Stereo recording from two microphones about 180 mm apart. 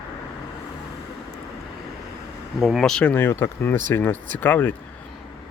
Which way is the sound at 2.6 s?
Centre (ahead or behind).